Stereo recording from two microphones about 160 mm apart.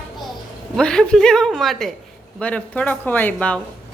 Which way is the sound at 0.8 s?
5° left (ahead or behind).